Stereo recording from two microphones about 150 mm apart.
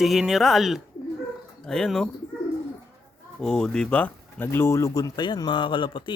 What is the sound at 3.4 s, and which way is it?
Speech, 5° left (ahead or behind).